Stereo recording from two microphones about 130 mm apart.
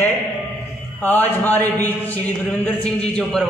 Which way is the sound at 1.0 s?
15° left (ahead or behind).